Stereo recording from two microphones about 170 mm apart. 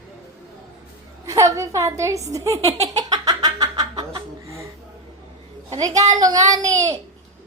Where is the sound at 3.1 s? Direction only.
25° right (ahead or behind).